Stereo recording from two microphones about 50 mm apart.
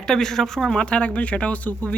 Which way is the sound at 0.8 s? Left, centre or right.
Left.